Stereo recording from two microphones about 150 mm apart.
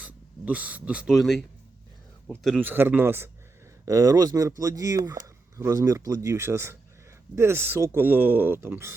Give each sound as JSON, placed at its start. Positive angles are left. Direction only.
{"t": 0.0, "sound": "speech", "side_deg": -10}
{"t": 2.6, "sound": "speech", "side_deg": -15}